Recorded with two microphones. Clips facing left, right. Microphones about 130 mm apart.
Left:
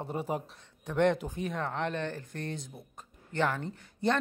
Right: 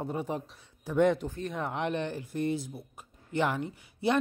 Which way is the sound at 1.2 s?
15° left (ahead or behind).